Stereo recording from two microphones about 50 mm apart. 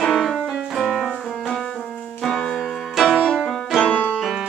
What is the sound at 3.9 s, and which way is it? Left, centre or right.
Music, left.